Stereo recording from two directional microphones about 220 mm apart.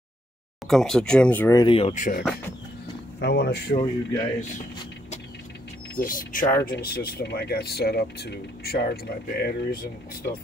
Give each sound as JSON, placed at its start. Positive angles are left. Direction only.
{"t": 0.7, "sound": "speech", "side_deg": 0}
{"t": 3.2, "sound": "speech", "side_deg": 50}
{"t": 3.8, "sound": "speech", "side_deg": 20}
{"t": 5.9, "sound": "speech", "side_deg": 40}
{"t": 6.4, "sound": "speech", "side_deg": 20}
{"t": 6.8, "sound": "speech", "side_deg": 45}